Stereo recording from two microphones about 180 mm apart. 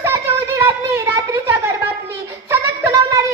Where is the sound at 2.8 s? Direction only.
15° right (ahead or behind).